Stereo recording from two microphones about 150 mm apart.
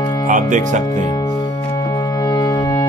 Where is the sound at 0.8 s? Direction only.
25° left (ahead or behind).